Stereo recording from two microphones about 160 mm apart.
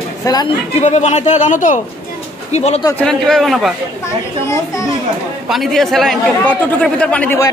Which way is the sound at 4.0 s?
20° left (ahead or behind).